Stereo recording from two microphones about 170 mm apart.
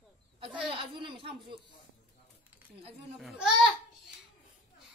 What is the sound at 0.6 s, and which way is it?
Speech, 30° right (ahead or behind).